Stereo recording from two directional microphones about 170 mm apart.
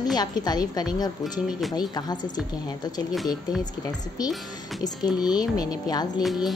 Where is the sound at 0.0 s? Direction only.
25° left (ahead or behind).